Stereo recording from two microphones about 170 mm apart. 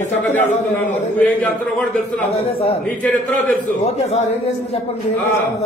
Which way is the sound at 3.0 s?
10° left (ahead or behind).